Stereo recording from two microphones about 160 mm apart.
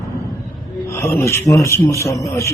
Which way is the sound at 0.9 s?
15° left (ahead or behind).